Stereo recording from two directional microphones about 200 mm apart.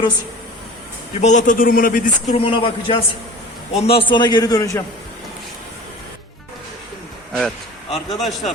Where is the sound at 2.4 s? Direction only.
25° left (ahead or behind).